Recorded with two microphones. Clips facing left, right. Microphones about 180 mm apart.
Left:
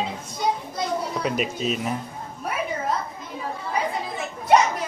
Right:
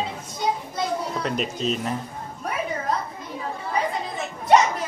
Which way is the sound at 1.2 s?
5° left (ahead or behind).